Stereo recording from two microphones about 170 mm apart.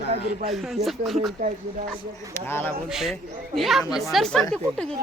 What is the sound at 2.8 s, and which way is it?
Speech, centre (ahead or behind).